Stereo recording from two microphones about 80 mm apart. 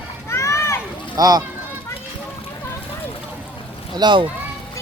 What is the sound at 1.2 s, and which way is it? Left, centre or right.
Speech, right.